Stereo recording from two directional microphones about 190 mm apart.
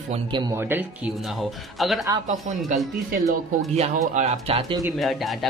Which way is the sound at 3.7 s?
35° right (ahead or behind).